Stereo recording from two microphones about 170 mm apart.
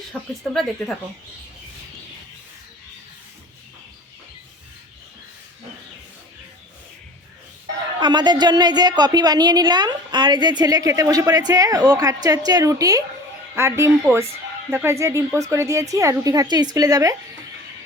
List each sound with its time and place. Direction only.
0.1 s a woman's voice: centre (ahead or behind)
7.9 s a woman's voice: 25° right (ahead or behind)